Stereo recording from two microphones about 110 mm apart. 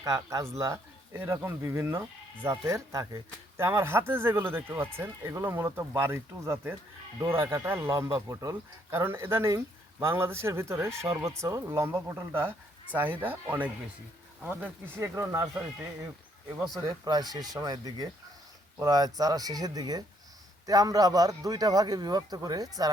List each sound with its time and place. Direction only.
0.0 s speech: 30° right (ahead or behind)
12.9 s speech: 15° right (ahead or behind)
16.7 s speech: 35° right (ahead or behind)